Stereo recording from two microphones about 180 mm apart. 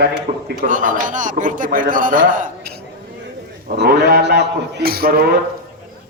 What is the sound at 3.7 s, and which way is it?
A man's voice, 70° right (ahead or behind).